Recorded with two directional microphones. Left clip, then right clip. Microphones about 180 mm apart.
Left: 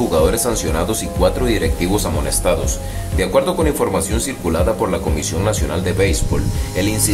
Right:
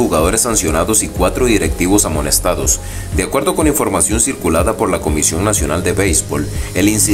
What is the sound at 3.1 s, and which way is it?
Speech, 15° right (ahead or behind).